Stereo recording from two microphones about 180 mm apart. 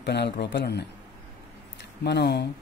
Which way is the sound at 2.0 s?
65° left (ahead or behind).